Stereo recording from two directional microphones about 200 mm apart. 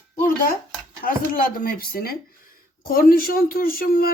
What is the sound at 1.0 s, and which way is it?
Speech, 45° left (ahead or behind).